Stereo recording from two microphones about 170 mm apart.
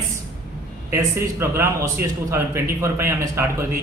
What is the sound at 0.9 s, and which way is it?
Speech, 15° right (ahead or behind).